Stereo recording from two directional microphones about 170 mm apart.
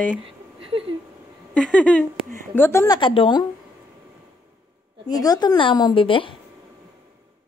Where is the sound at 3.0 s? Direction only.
30° left (ahead or behind).